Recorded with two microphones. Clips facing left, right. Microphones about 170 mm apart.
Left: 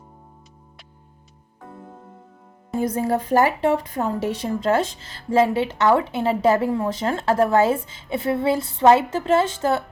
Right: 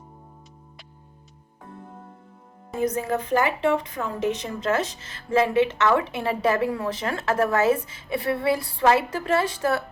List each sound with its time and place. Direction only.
3.0 s a woman's voice: 40° left (ahead or behind)